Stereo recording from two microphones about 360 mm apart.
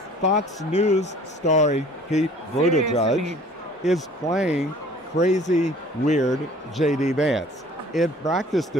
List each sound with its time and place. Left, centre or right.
0.2 s speech: centre
3.9 s speech: centre
5.1 s speech: centre
7.2 s speech: centre